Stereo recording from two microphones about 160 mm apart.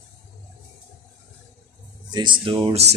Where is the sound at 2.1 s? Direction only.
30° right (ahead or behind).